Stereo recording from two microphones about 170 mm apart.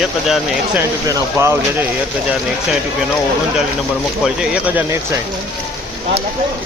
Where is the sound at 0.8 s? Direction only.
15° right (ahead or behind).